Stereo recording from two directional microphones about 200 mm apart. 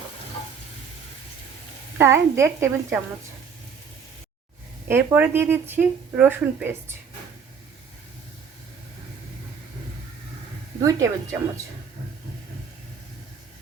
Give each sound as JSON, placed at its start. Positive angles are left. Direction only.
{"t": 2.0, "sound": "speech", "side_deg": -15}
{"t": 4.9, "sound": "speech", "side_deg": -10}
{"t": 10.8, "sound": "speech", "side_deg": -15}